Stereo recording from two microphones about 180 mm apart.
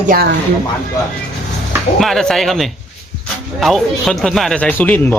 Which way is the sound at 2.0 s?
Centre (ahead or behind).